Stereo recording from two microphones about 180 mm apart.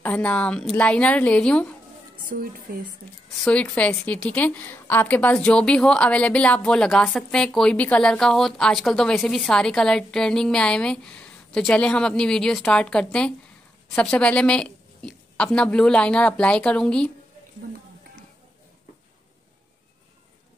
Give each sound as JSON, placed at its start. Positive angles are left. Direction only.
{"t": 0.0, "sound": "a woman's voice", "side_deg": 10}
{"t": 2.2, "sound": "speech", "side_deg": -50}
{"t": 3.4, "sound": "a woman's voice", "side_deg": 5}